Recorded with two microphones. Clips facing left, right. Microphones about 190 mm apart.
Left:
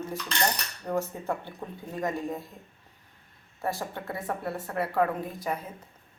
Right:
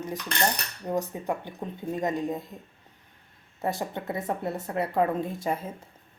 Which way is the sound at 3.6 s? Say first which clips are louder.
Right 2 dB; 20° right (ahead or behind).